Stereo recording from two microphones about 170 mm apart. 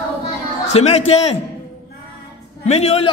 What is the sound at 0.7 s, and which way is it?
Speech, 40° left (ahead or behind).